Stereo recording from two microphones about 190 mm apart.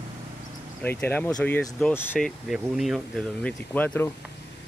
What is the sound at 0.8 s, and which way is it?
Speech, 10° left (ahead or behind).